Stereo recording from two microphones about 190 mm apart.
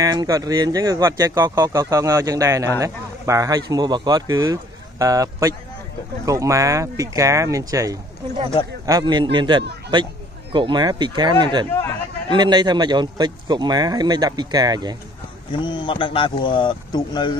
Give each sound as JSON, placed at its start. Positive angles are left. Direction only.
{"t": 0.0, "sound": "speech", "side_deg": -20}
{"t": 15.6, "sound": "speech", "side_deg": 25}